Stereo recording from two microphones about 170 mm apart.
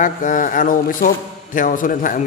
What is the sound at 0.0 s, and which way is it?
A man's voice, 50° left (ahead or behind).